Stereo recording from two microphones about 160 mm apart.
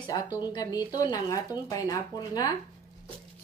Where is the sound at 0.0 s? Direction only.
25° left (ahead or behind).